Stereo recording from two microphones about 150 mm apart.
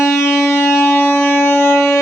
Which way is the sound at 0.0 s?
15° left (ahead or behind).